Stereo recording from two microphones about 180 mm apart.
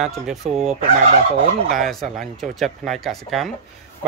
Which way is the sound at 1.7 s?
Centre (ahead or behind).